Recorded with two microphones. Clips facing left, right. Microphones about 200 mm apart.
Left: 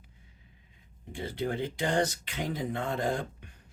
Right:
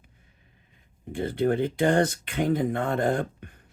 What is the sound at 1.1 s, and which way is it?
Speech, 55° right (ahead or behind).